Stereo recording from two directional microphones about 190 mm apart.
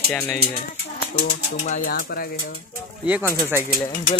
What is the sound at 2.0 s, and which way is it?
Speech, 65° left (ahead or behind).